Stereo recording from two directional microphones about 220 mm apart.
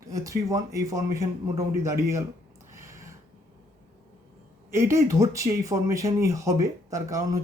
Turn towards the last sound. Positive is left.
turn(degrees=-15)  # may be behind; listen again after turning